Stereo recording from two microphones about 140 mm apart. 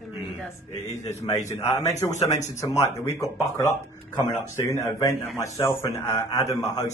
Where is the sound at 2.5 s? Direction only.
20° left (ahead or behind).